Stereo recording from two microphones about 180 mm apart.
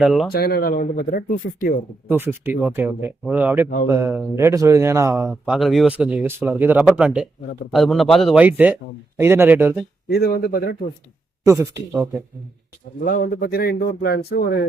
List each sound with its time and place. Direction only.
0.0 s a man's voice: centre (ahead or behind)
0.3 s speech: 60° left (ahead or behind)
2.0 s a man's voice: 10° right (ahead or behind)
10.1 s speech: 60° left (ahead or behind)
11.4 s speech: 15° right (ahead or behind)
13.1 s speech: 55° left (ahead or behind)